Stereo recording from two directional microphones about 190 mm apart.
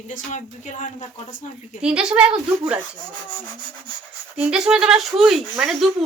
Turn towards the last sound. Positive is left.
turn(degrees=0)  # may be behind; listen again after turning